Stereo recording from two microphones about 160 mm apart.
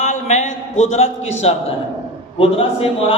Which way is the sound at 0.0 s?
45° left (ahead or behind).